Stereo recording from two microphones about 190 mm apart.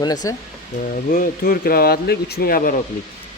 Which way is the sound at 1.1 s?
50° left (ahead or behind).